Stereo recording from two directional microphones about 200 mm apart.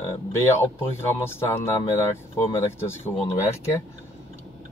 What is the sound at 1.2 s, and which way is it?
Speech, 10° left (ahead or behind).